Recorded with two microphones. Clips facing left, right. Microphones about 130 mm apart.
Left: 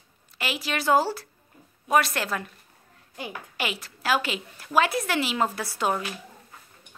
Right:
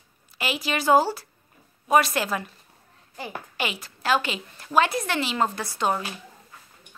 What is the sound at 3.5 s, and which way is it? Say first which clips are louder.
A woman's voice: right 1 dB; centre (ahead or behind).